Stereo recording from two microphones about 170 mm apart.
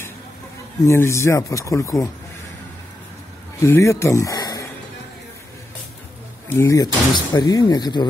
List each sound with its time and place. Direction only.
0.8 s speech: 15° left (ahead or behind)
3.5 s speech: 15° left (ahead or behind)
6.5 s speech: 15° left (ahead or behind)